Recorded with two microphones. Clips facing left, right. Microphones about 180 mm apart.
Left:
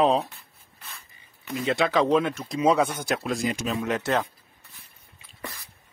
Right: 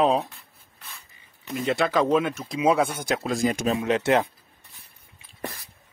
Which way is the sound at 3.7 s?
30° right (ahead or behind).